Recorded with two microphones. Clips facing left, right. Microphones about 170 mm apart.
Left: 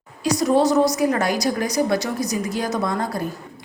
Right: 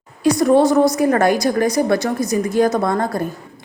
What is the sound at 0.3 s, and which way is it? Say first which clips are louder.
A woman's voice: right 5 dB; 55° right (ahead or behind).